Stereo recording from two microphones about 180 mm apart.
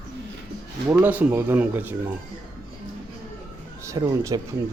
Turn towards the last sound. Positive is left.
turn(degrees=-20)  # may be behind; listen again after turning